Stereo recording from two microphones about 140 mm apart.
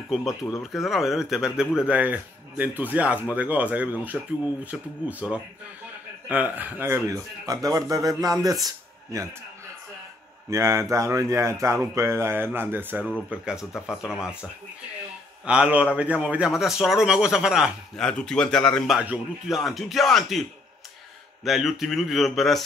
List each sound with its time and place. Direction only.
0.1 s a man's voice: 5° right (ahead or behind); by 8.5 s 25° right (ahead or behind)
8.6 s a sound: 25° right (ahead or behind)
10.5 s a man's voice: 20° right (ahead or behind); by 14.3 s 5° right (ahead or behind)
15.4 s a man's voice: 10° right (ahead or behind)
18.9 s a man's voice: 5° right (ahead or behind)
21.5 s a man's voice: centre (ahead or behind)